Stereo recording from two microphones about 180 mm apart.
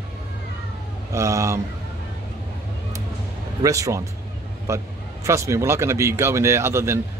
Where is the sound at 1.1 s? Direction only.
15° right (ahead or behind).